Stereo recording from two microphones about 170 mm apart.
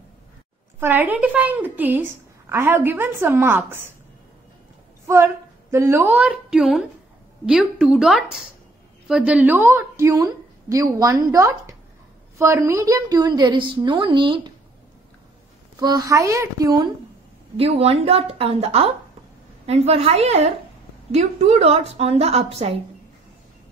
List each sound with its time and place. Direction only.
0.7 s a woman's voice: 10° right (ahead or behind)
5.0 s a woman's voice: 15° right (ahead or behind)
15.8 s a woman's voice: 20° right (ahead or behind)
17.6 s a woman's voice: 35° right (ahead or behind)